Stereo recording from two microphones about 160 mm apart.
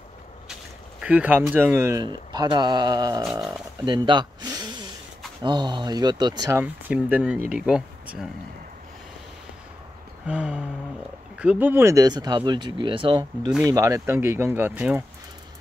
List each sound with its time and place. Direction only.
1.0 s speech: 10° right (ahead or behind); by 3.3 s 25° right (ahead or behind)
3.8 s a sound: 30° right (ahead or behind)
5.4 s speech: 30° right (ahead or behind)
6.6 s speech: 10° right (ahead or behind)
10.2 s speech: 5° right (ahead or behind); by 13.5 s 30° right (ahead or behind)
13.7 s speech: 20° right (ahead or behind)